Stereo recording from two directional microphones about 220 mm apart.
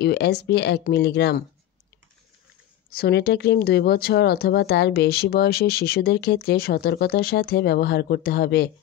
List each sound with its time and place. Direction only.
0.0 s speech: 50° left (ahead or behind)
2.9 s speech: 45° left (ahead or behind)